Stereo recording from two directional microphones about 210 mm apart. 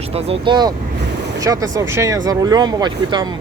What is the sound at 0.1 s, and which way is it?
Speech, 30° right (ahead or behind).